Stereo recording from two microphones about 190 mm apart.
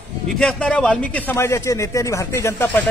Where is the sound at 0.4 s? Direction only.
5° left (ahead or behind).